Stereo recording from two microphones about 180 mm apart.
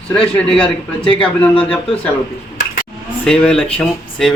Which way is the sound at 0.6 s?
30° left (ahead or behind).